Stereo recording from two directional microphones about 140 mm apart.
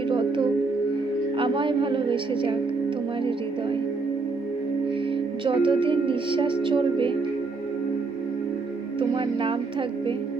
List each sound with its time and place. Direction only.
0.1 s music: 35° right (ahead or behind)
1.4 s a woman's voice: 35° right (ahead or behind)
5.5 s speech: 35° right (ahead or behind)
9.0 s speech: 35° right (ahead or behind)